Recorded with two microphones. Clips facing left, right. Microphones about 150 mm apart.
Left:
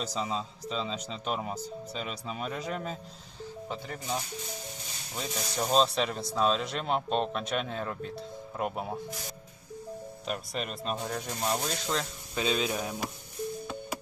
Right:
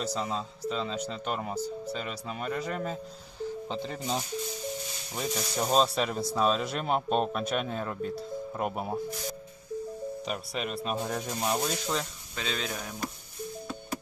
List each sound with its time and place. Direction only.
0.0 s speech: centre (ahead or behind)
3.7 s speech: 20° right (ahead or behind)
5.2 s speech: centre (ahead or behind)
10.2 s speech: centre (ahead or behind)
12.5 s speech: 10° left (ahead or behind)